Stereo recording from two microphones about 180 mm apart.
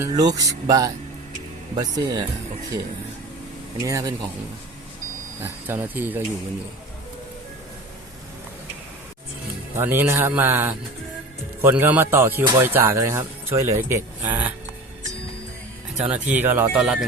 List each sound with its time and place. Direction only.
0.0 s speech: 20° right (ahead or behind)
3.8 s speech: 20° right (ahead or behind)
5.4 s speech: 10° right (ahead or behind)
9.7 s speech: 10° right (ahead or behind)
16.0 s speech: 40° right (ahead or behind)
16.5 s speech: 10° right (ahead or behind)